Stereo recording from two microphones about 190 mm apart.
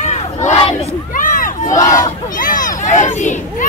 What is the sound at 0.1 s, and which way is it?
Crowd, 35° left (ahead or behind).